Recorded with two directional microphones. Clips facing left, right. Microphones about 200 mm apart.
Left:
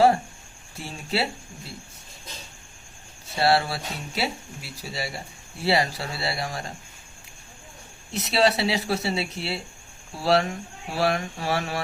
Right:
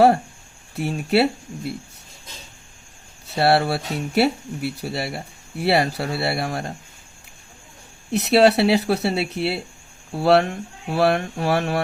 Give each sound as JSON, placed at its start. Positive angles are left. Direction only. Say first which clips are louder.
{"t": 0.8, "sound": "speech", "louder": "right 9 dB", "side_deg": -60}
{"t": 3.3, "sound": "speech", "louder": "right 4 dB", "side_deg": -60}
{"t": 8.1, "sound": "speech", "louder": "right 7 dB", "side_deg": -60}